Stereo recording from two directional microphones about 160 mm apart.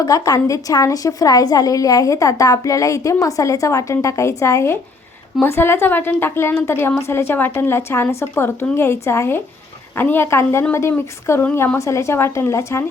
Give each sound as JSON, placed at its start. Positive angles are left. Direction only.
{"t": 0.0, "sound": "a woman's voice", "side_deg": 20}